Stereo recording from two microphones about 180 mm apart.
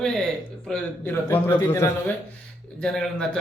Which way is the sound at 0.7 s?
10° left (ahead or behind).